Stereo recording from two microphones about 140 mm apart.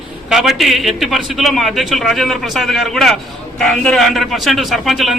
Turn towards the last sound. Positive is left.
turn(degrees=0)  # may be behind; listen again after turning